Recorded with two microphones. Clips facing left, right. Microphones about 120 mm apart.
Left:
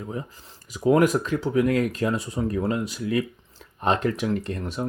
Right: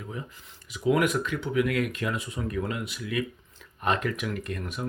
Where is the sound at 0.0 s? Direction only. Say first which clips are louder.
Left 5 dB; 35° left (ahead or behind).